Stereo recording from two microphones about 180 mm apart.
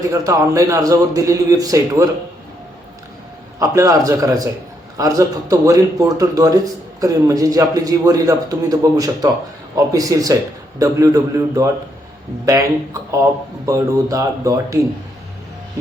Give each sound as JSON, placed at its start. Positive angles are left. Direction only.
{"t": 0.1, "sound": "a man's voice", "side_deg": -20}
{"t": 3.6, "sound": "a man's voice", "side_deg": -20}